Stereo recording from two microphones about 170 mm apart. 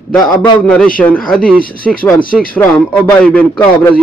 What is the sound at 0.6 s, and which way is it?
A man's voice, 5° left (ahead or behind).